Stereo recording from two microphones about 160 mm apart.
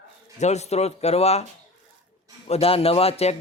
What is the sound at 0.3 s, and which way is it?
Speech, 45° left (ahead or behind).